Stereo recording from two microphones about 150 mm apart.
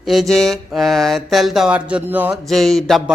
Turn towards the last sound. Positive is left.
turn(degrees=0)  # may be behind; listen again after turning